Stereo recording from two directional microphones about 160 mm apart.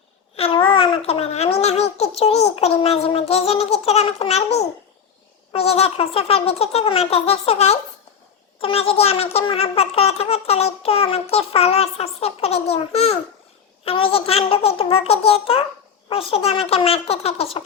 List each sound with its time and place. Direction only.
0.3 s speech: 35° left (ahead or behind)